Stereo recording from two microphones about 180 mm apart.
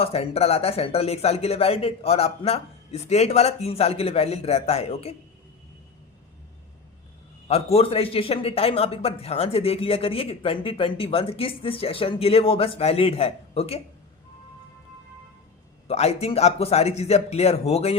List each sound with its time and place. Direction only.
0.0 s a man's voice: 35° left (ahead or behind)
7.4 s a man's voice: 35° left (ahead or behind)
15.9 s a man's voice: 35° left (ahead or behind)